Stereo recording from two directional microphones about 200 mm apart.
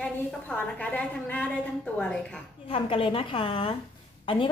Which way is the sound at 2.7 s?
25° left (ahead or behind).